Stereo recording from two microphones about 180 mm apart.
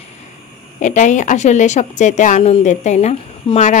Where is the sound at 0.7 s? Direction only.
45° left (ahead or behind).